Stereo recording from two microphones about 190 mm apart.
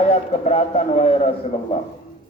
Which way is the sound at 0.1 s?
35° left (ahead or behind).